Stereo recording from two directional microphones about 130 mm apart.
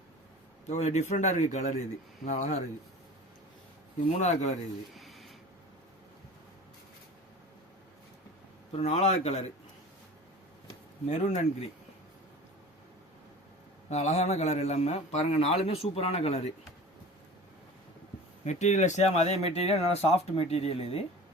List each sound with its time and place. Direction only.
0.7 s speech: 60° left (ahead or behind)
4.2 s speech: 60° left (ahead or behind)
4.9 s a sound: centre (ahead or behind)
8.7 s speech: 55° left (ahead or behind)
11.1 s speech: 65° left (ahead or behind)
13.9 s a man's voice: 60° left (ahead or behind)
18.4 s a man's voice: 65° left (ahead or behind); by 21.0 s 50° left (ahead or behind)